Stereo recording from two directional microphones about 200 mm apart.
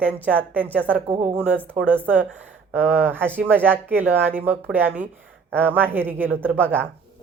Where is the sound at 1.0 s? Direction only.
35° right (ahead or behind).